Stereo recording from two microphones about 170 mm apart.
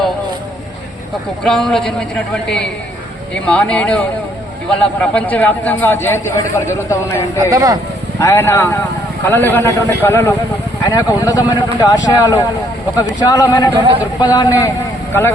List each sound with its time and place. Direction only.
1.5 s a man's voice: centre (ahead or behind); by 7.3 s 15° left (ahead or behind)
7.5 s speech: 20° right (ahead or behind)
8.2 s a man's voice: 15° left (ahead or behind)
13.7 s speech: 30° right (ahead or behind)
14.3 s speech: 20° left (ahead or behind)